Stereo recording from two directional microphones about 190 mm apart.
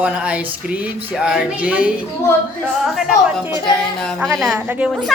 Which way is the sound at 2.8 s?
Centre (ahead or behind).